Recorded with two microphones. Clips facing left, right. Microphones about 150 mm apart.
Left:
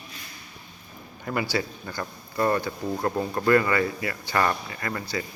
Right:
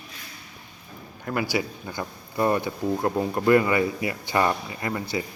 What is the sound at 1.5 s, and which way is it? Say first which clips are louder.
Speech: right 1 dB; 15° right (ahead or behind).